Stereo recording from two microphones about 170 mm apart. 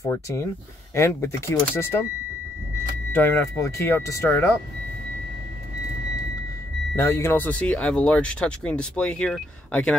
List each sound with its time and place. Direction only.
0.0 s speech: 15° left (ahead or behind)
3.1 s speech: 10° left (ahead or behind)
7.0 s speech: 15° left (ahead or behind)